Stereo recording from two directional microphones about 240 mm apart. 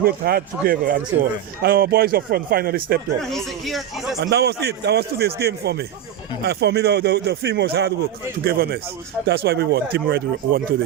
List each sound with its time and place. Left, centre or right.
0.0 s speech: right
3.2 s speech: centre
4.2 s a man's voice: right